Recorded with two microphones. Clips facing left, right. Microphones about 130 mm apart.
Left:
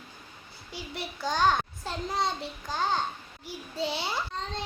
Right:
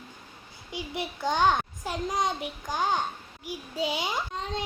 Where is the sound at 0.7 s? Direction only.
15° right (ahead or behind).